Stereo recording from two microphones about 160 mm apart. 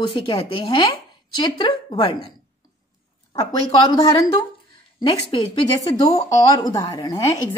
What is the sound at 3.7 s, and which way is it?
A woman's voice, 25° left (ahead or behind).